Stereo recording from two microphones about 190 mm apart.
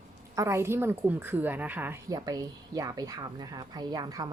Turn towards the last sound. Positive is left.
turn(degrees=-20)  # may be behind; listen again after turning